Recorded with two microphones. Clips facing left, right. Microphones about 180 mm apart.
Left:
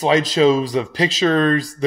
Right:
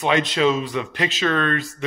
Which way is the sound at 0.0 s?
35° left (ahead or behind).